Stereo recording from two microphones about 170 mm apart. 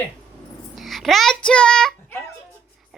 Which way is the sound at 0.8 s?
Centre (ahead or behind).